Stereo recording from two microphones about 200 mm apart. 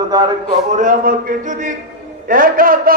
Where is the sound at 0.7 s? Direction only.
40° right (ahead or behind).